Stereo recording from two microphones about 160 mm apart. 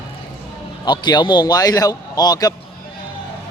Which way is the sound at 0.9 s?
25° left (ahead or behind).